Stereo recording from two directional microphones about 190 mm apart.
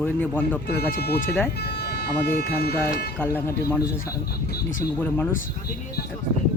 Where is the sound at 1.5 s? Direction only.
60° left (ahead or behind).